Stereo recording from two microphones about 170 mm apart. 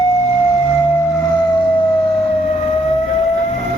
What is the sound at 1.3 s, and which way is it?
Music, 30° left (ahead or behind).